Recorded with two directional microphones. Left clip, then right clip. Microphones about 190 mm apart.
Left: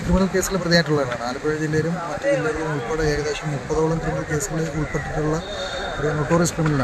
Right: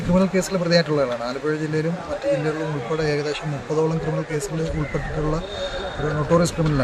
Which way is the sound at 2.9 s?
5° right (ahead or behind).